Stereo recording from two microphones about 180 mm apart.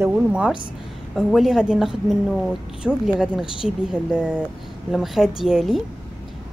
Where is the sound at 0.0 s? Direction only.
5° right (ahead or behind).